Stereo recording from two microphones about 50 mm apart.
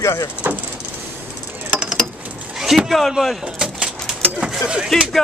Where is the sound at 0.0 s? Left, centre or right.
Left.